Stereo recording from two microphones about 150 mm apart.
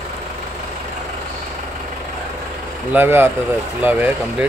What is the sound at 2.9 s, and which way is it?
Speech, 15° right (ahead or behind).